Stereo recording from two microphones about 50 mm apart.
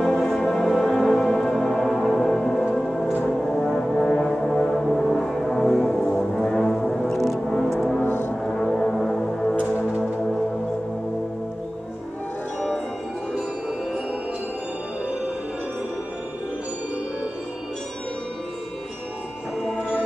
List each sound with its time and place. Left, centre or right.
0.0 s music: centre
3.3 s brass instrument: centre
4.6 s music: centre
8.0 s music: left
8.5 s music: centre